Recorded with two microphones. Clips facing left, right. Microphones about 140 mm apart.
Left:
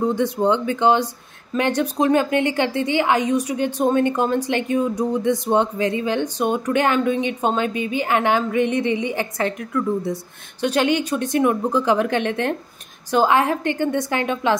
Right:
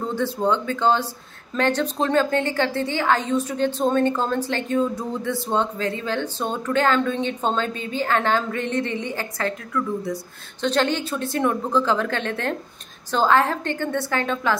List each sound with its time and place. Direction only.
0.0 s speech: 15° left (ahead or behind)
10.6 s speech: 10° left (ahead or behind)